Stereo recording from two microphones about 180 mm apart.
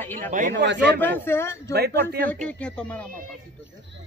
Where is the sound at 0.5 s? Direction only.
75° right (ahead or behind).